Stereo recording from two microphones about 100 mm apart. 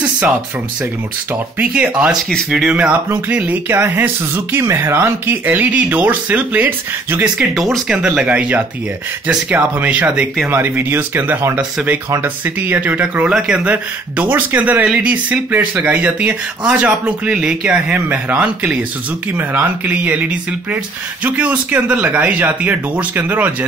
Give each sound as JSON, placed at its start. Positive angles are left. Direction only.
{"t": 1.6, "sound": "speech", "side_deg": -10}
{"t": 2.7, "sound": "speech", "side_deg": -10}
{"t": 7.3, "sound": "speech", "side_deg": 0}
{"t": 17.9, "sound": "speech", "side_deg": -20}